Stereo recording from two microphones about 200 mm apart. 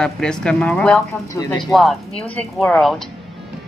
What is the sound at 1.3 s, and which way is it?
Speech, 20° left (ahead or behind).